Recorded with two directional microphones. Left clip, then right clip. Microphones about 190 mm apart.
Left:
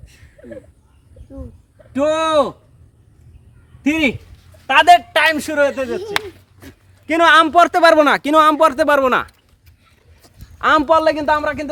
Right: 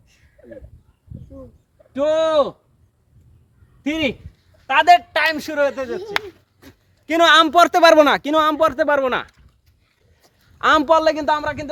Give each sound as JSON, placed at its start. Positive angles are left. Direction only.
{"t": 0.0, "sound": "a sound", "side_deg": 10}
{"t": 1.9, "sound": "speech", "side_deg": -5}
{"t": 3.8, "sound": "a man's voice", "side_deg": -5}
{"t": 5.8, "sound": "a man's voice", "side_deg": -10}
{"t": 7.0, "sound": "a man's voice", "side_deg": -45}
{"t": 8.2, "sound": "speech", "side_deg": 0}
{"t": 10.6, "sound": "a man's voice", "side_deg": -50}